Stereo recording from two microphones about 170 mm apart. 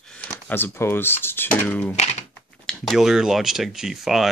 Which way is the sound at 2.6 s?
Centre (ahead or behind).